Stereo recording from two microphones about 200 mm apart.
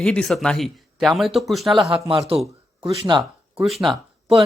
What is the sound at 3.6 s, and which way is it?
Speech, centre (ahead or behind).